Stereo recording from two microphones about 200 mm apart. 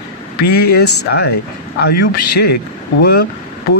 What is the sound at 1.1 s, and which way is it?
Speech, 60° left (ahead or behind).